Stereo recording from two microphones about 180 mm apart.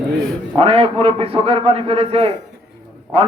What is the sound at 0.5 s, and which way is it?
A man's voice, 35° right (ahead or behind).